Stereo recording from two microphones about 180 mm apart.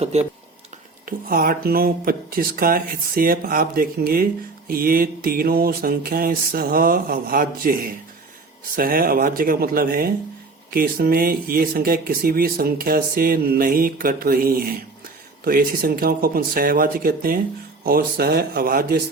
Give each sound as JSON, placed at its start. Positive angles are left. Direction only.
{"t": 0.0, "sound": "speech", "side_deg": -35}
{"t": 1.0, "sound": "speech", "side_deg": -55}